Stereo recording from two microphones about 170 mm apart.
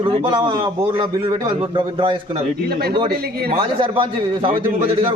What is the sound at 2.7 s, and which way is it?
Speech, 65° right (ahead or behind).